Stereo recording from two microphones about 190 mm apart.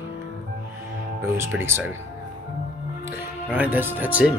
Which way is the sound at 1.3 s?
15° right (ahead or behind).